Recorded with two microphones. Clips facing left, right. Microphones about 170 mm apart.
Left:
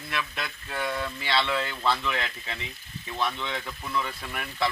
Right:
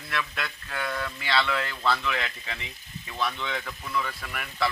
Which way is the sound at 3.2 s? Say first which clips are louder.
Even; 20° left (ahead or behind).